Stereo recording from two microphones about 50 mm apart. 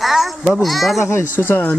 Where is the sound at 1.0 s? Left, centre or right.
Left.